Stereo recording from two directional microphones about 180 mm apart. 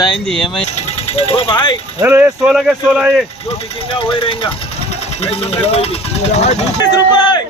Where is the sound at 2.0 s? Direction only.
10° right (ahead or behind).